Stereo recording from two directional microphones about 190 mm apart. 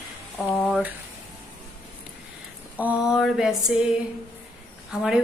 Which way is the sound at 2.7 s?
5° right (ahead or behind).